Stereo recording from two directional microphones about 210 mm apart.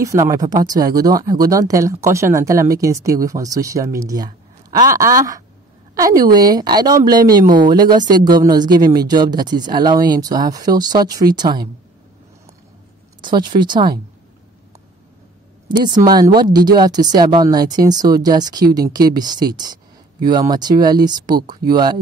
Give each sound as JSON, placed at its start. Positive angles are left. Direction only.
{"t": 0.0, "sound": "speech", "side_deg": -15}
{"t": 13.2, "sound": "speech", "side_deg": -20}
{"t": 16.1, "sound": "speech", "side_deg": -20}